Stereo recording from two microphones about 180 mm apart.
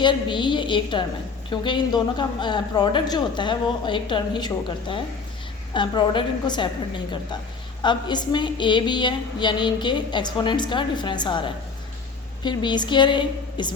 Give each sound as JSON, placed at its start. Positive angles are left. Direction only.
{"t": 0.0, "sound": "a woman's voice", "side_deg": 25}